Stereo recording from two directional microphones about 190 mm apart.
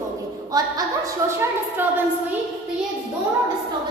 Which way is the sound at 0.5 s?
20° right (ahead or behind).